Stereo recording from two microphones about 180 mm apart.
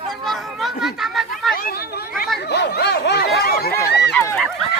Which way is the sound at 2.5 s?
70° left (ahead or behind).